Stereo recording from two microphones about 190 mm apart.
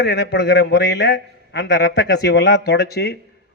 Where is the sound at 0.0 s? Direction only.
60° left (ahead or behind).